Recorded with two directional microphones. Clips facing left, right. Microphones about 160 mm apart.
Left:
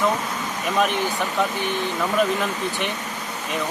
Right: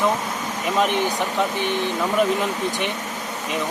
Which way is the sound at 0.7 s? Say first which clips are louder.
Right 1 dB; 20° right (ahead or behind).